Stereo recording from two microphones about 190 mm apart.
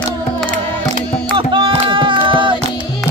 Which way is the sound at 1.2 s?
25° right (ahead or behind).